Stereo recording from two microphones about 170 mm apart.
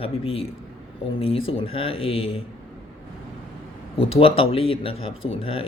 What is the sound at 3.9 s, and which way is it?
A man's voice, 35° left (ahead or behind).